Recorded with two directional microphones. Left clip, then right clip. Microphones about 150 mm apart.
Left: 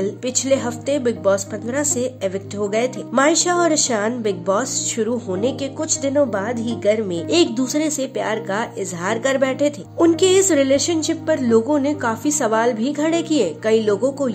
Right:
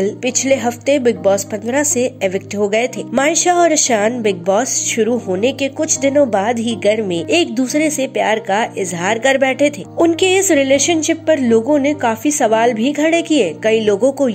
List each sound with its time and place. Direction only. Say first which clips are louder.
0.0 s a woman's voice: right 5 dB; 15° right (ahead or behind)
10.5 s a woman's voice: right 4 dB; 45° left (ahead or behind)
11.1 s a woman's voice: right 5 dB; 15° right (ahead or behind)